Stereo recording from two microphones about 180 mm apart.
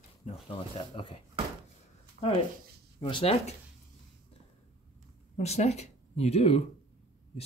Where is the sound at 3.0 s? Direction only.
30° left (ahead or behind).